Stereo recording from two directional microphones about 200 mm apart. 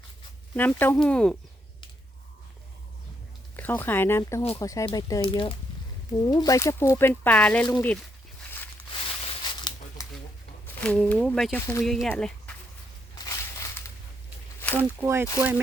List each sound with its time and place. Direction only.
0.5 s speech: 10° left (ahead or behind)
3.5 s speech: 10° left (ahead or behind)
9.2 s a sound: 20° left (ahead or behind)
10.8 s speech: 5° left (ahead or behind)
13.2 s crushing: 15° left (ahead or behind)
14.8 s speech: 10° right (ahead or behind)